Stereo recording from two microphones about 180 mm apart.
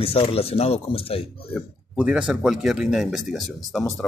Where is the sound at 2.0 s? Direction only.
5° right (ahead or behind).